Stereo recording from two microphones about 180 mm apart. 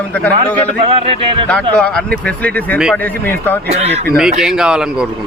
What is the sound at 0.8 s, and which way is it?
Speech, 30° right (ahead or behind).